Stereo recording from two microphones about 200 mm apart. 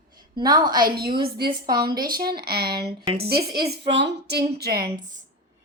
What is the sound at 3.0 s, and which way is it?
Speech, 25° right (ahead or behind).